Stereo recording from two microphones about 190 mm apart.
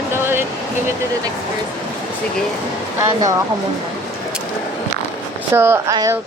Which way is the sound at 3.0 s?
15° right (ahead or behind).